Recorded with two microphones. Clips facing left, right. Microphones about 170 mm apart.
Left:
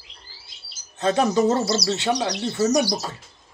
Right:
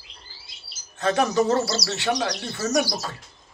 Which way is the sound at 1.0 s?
20° left (ahead or behind).